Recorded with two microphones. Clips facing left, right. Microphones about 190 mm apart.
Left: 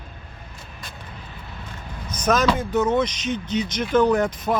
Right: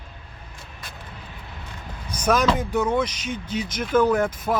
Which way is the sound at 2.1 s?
10° right (ahead or behind).